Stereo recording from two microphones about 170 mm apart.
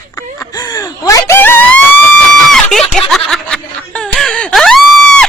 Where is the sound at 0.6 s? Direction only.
20° left (ahead or behind).